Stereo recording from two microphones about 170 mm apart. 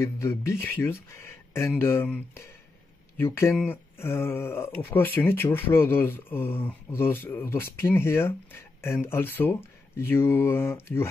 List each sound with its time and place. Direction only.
0.0 s speech: 15° left (ahead or behind)